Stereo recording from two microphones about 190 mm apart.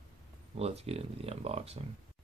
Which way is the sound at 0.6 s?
30° right (ahead or behind).